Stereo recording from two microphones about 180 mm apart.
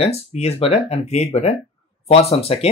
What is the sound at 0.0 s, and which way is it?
Speech, 35° left (ahead or behind).